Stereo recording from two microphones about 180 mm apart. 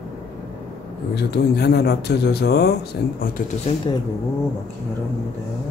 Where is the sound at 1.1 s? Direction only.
65° left (ahead or behind).